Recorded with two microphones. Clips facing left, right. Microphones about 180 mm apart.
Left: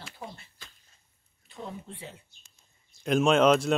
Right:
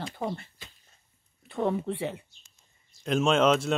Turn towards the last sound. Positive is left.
turn(degrees=0)  # may be behind; listen again after turning